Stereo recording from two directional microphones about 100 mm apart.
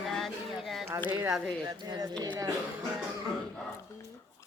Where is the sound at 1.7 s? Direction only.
45° right (ahead or behind).